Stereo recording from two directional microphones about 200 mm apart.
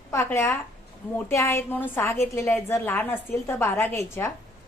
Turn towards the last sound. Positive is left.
turn(degrees=10)  # may be behind; listen again after turning